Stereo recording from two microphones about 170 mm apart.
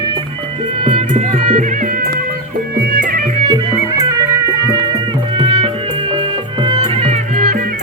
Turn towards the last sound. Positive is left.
turn(degrees=-30)  # may be behind; listen again after turning